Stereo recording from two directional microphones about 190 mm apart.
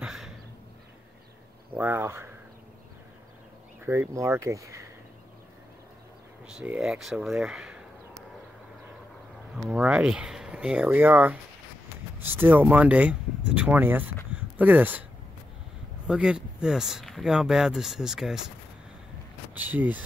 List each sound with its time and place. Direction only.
0.0 s a sound: centre (ahead or behind)
1.8 s speech: 10° right (ahead or behind)
3.8 s speech: 10° right (ahead or behind)
6.4 s speech: 5° right (ahead or behind)
9.7 s speech: 5° right (ahead or behind)
12.4 s speech: 10° right (ahead or behind)
16.1 s speech: 5° right (ahead or behind)
19.7 s speech: 10° right (ahead or behind)